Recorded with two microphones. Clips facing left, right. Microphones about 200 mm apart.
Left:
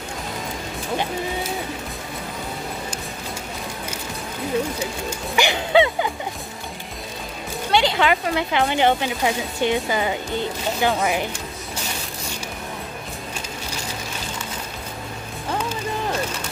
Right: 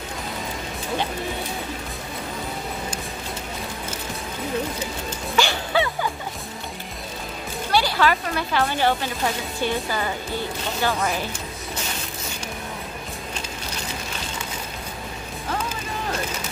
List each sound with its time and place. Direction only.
5.3 s music: 15° left (ahead or behind)
7.7 s a woman's voice: 20° left (ahead or behind)